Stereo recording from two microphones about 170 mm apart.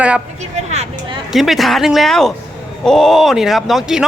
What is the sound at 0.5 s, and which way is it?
Speech, 40° right (ahead or behind).